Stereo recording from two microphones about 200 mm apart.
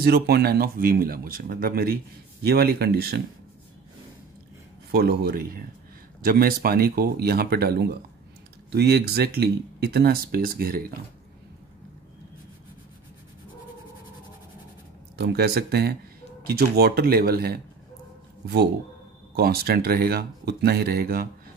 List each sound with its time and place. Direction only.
0.0 s speech: 50° right (ahead or behind)
4.9 s speech: 50° right (ahead or behind)
15.1 s speech: 55° right (ahead or behind)
19.3 s speech: 50° right (ahead or behind)